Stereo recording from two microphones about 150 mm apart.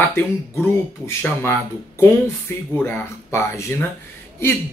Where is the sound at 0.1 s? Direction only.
15° left (ahead or behind).